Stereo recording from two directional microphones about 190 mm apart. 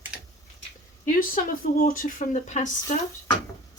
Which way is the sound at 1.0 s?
45° left (ahead or behind).